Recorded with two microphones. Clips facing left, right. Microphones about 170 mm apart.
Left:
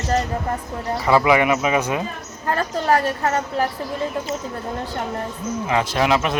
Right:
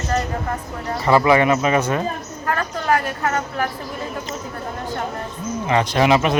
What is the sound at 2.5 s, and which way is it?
A woman's voice, 35° left (ahead or behind).